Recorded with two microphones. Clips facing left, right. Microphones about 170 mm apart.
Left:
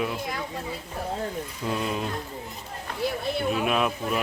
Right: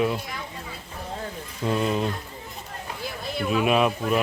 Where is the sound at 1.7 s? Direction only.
Centre (ahead or behind).